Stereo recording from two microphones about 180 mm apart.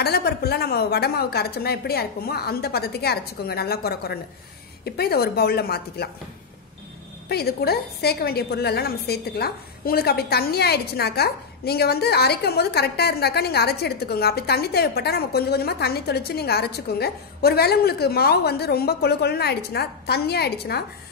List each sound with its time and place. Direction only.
0.0 s a woman's voice: 60° left (ahead or behind)
7.2 s a woman's voice: 60° left (ahead or behind)